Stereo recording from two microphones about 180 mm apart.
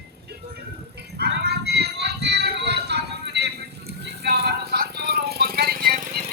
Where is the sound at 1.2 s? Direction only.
65° right (ahead or behind).